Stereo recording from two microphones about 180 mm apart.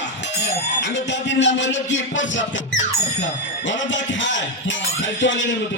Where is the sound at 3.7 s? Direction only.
90° left.